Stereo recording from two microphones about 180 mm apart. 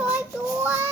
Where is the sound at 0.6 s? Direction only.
15° right (ahead or behind).